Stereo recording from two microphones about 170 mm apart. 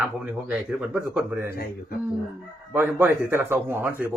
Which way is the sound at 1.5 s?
65° left (ahead or behind).